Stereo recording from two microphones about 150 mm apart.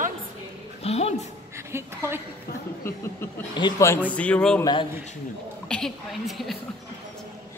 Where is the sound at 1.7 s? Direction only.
15° right (ahead or behind).